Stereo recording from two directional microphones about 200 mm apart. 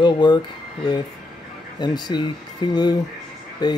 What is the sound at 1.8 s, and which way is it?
Speech, 20° left (ahead or behind).